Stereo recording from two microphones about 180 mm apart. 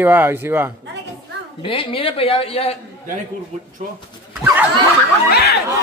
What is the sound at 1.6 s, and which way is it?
A woman's voice, 30° left (ahead or behind).